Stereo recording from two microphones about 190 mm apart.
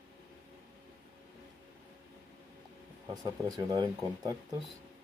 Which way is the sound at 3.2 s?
20° right (ahead or behind).